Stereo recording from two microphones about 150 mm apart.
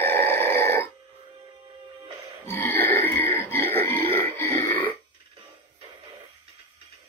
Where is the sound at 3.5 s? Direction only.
15° left (ahead or behind).